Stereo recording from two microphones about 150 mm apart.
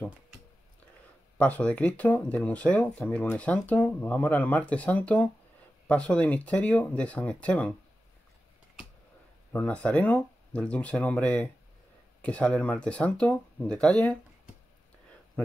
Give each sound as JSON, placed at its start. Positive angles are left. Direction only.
{"t": 1.4, "sound": "speech", "side_deg": 10}
{"t": 9.5, "sound": "speech", "side_deg": 10}